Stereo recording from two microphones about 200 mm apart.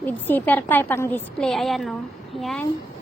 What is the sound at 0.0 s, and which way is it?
A woman's voice, 10° left (ahead or behind).